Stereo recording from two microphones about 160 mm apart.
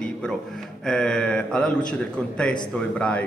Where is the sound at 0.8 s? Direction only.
5° left (ahead or behind).